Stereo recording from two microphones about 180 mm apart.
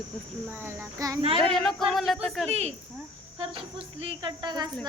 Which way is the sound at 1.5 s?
Centre (ahead or behind).